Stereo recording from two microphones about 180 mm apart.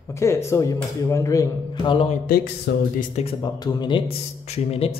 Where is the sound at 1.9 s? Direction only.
30° left (ahead or behind).